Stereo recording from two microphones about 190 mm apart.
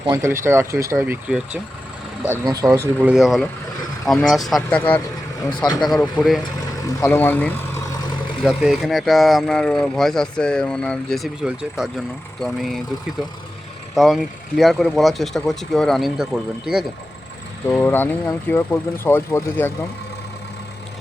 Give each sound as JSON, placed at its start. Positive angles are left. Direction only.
{"t": 0.1, "sound": "speech", "side_deg": -15}
{"t": 2.4, "sound": "speech", "side_deg": -20}
{"t": 3.1, "sound": "speech", "side_deg": -5}
{"t": 5.5, "sound": "speech", "side_deg": 25}
{"t": 5.8, "sound": "speech", "side_deg": 5}
{"t": 8.4, "sound": "speech", "side_deg": -5}
{"t": 13.9, "sound": "speech", "side_deg": 0}
{"t": 17.7, "sound": "speech", "side_deg": 10}